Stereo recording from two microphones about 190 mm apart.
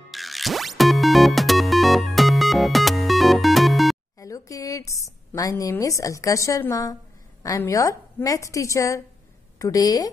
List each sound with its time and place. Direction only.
0.1 s music: centre (ahead or behind)
4.2 s a sound: 20° left (ahead or behind)
7.4 s a woman's voice: 15° left (ahead or behind)